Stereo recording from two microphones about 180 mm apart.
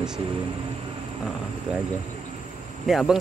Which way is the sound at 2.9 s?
Centre (ahead or behind).